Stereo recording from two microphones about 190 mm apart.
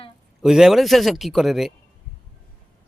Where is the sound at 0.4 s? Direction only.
Centre (ahead or behind).